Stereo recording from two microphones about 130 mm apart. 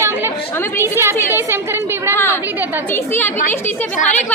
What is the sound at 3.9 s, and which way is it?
Speech, 70° left (ahead or behind).